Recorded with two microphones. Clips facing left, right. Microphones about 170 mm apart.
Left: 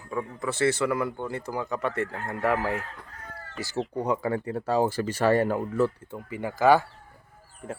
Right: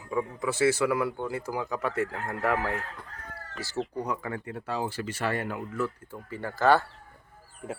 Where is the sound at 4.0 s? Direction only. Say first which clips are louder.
Left 6 dB; 30° left (ahead or behind).